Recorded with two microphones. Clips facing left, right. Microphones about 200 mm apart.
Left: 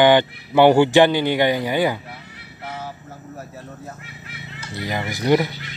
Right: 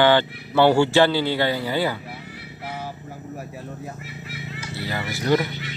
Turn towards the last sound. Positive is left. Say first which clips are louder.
# left 3 dB
turn(degrees=15)  # may be behind; listen again after turning